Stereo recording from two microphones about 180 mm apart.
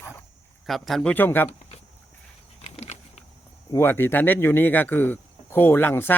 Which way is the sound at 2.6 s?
35° left (ahead or behind).